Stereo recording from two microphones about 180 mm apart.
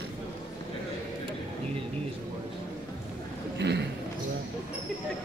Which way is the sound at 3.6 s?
70° right (ahead or behind).